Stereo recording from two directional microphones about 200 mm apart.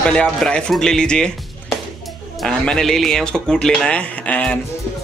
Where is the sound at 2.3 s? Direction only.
5° left (ahead or behind).